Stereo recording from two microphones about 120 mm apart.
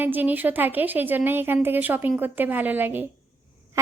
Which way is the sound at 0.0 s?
15° right (ahead or behind).